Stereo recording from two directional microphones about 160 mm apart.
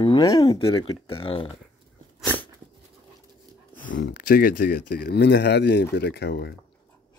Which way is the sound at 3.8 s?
60° left (ahead or behind).